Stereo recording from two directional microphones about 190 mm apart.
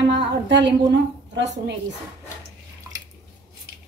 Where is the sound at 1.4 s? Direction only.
65° right (ahead or behind).